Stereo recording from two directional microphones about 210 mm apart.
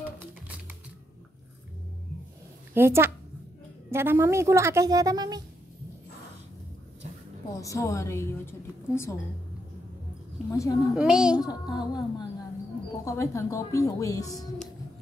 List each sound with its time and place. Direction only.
2.7 s a woman's voice: 10° right (ahead or behind)
7.5 s a woman's voice: 15° left (ahead or behind)
10.5 s a woman's voice: 15° left (ahead or behind)
11.0 s a child's voice: 5° right (ahead or behind)
11.4 s a sound: 20° left (ahead or behind)
13.0 s a woman's voice: 15° left (ahead or behind)